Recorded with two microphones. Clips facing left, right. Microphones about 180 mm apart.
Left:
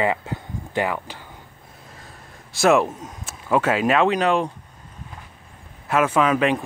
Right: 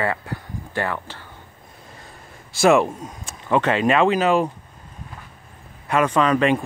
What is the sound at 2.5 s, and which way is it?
Speech, centre (ahead or behind).